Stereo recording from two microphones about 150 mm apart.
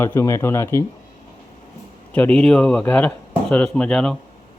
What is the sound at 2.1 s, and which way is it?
A man's voice, 5° left (ahead or behind).